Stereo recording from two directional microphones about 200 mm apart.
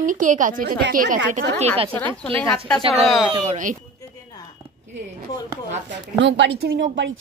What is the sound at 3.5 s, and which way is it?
Speech, 40° right (ahead or behind).